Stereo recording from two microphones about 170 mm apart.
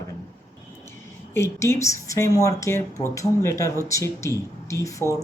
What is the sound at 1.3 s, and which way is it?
Speech, 15° left (ahead or behind).